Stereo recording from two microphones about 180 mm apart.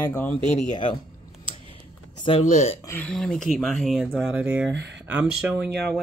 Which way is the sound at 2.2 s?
35° left (ahead or behind).